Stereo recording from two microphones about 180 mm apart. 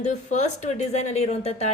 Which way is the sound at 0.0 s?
40° left (ahead or behind).